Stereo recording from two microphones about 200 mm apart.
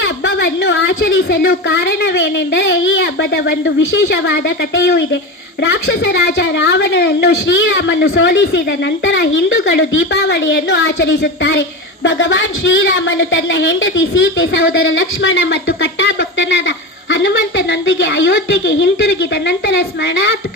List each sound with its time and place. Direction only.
0.0 s a woman's voice: 60° left (ahead or behind)